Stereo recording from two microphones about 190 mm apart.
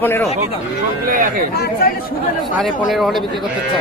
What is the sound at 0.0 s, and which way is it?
Speech, 10° left (ahead or behind).